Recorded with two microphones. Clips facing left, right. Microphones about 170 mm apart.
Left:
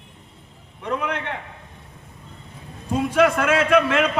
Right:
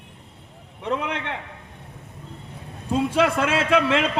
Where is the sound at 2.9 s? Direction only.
25° right (ahead or behind).